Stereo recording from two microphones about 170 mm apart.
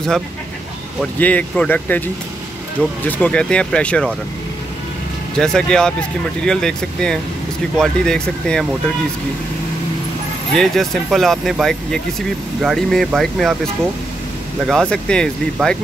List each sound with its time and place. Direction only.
1.2 s speech: 10° left (ahead or behind)
5.4 s speech: 5° left (ahead or behind)
10.5 s speech: centre (ahead or behind)
14.7 s speech: 5° left (ahead or behind)